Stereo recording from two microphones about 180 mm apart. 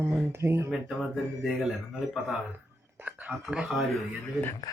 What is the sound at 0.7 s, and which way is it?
Mantra, centre (ahead or behind).